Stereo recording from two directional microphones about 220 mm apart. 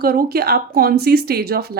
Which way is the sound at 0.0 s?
45° right (ahead or behind).